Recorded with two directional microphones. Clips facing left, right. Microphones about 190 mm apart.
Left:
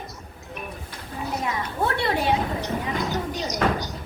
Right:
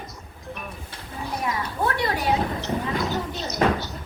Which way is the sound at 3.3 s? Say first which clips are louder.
Right 2 dB; 15° left (ahead or behind).